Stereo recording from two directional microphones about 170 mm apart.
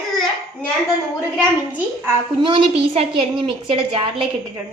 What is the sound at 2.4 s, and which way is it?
A woman's voice, 30° right (ahead or behind).